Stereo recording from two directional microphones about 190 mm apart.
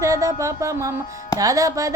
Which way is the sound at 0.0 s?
15° right (ahead or behind).